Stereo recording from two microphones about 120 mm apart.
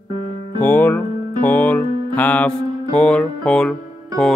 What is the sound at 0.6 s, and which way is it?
Music, 15° left (ahead or behind).